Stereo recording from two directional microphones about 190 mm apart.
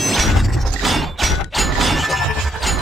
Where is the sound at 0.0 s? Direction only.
Centre (ahead or behind).